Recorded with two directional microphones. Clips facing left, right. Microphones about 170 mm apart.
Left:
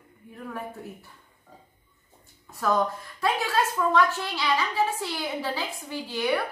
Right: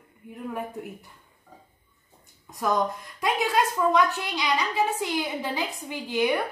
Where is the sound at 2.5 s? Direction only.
15° right (ahead or behind).